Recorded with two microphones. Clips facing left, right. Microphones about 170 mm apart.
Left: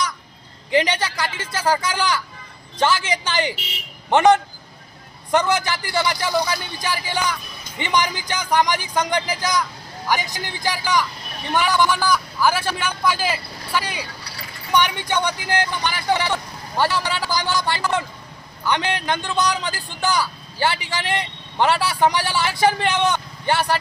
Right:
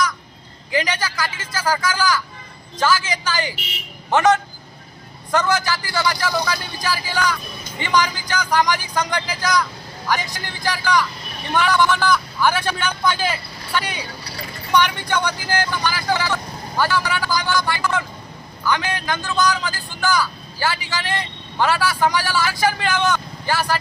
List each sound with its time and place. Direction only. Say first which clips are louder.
0.7 s a man's voice: left 3 dB; 25° left (ahead or behind); by 14.0 s 5° left (ahead or behind)
14.8 s a man's voice: right 1 dB; 20° left (ahead or behind)